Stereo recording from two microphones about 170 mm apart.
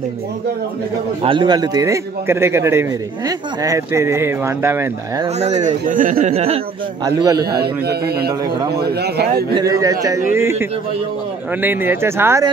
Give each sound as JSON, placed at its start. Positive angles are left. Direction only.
{"t": 1.2, "sound": "a man's voice", "side_deg": -30}
{"t": 5.4, "sound": "a man's voice", "side_deg": -45}
{"t": 6.3, "sound": "speech", "side_deg": -35}
{"t": 7.1, "sound": "a man's voice", "side_deg": -20}
{"t": 7.6, "sound": "a man's voice", "side_deg": -70}
{"t": 9.5, "sound": "a man's voice", "side_deg": -25}